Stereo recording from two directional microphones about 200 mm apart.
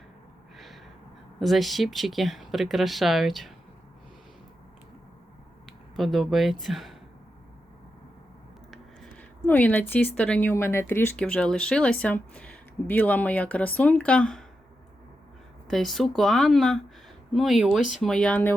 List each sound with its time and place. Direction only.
0.5 s gasp: centre (ahead or behind)
1.4 s speech: centre (ahead or behind)
5.6 s speech: centre (ahead or behind)
8.7 s speech: 5° left (ahead or behind)
15.6 s speech: centre (ahead or behind)